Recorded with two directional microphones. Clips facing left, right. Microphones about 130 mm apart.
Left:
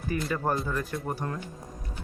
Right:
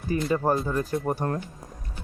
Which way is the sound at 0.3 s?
25° right (ahead or behind).